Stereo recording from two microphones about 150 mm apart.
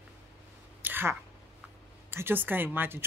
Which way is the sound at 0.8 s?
15° right (ahead or behind).